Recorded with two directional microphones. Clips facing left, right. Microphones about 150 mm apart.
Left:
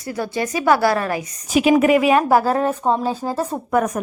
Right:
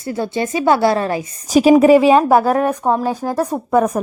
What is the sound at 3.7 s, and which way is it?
Speech, 30° right (ahead or behind).